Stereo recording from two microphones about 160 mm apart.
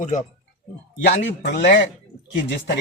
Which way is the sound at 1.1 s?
90° left.